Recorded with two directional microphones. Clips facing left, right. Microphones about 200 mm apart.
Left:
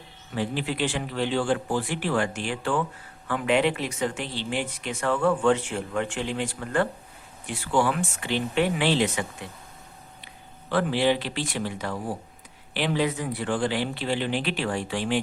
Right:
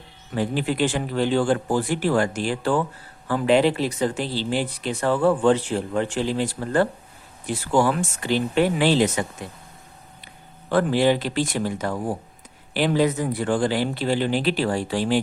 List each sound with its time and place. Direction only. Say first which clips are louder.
0.3 s speech: right 5 dB; 45° right (ahead or behind)
10.7 s speech: right 4 dB; 45° right (ahead or behind)